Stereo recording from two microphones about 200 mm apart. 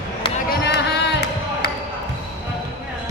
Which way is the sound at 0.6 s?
55° left (ahead or behind).